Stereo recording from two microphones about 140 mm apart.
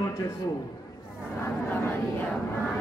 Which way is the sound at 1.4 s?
15° left (ahead or behind).